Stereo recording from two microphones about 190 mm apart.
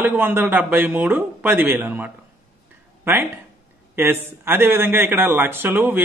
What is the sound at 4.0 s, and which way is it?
A man's voice, 10° right (ahead or behind).